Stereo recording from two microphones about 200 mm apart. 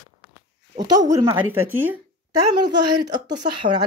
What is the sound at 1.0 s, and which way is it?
Speech, 20° right (ahead or behind).